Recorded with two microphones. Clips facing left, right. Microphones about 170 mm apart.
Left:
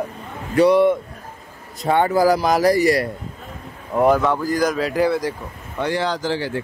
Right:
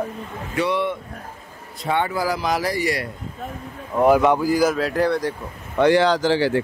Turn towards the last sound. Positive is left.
turn(degrees=-80)